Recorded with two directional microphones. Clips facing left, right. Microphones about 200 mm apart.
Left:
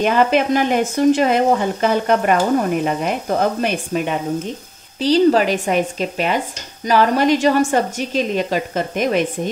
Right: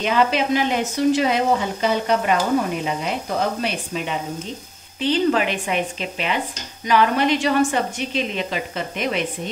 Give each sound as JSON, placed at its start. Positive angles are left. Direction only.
{"t": 0.0, "sound": "speech", "side_deg": 50}
{"t": 5.0, "sound": "a woman's voice", "side_deg": 40}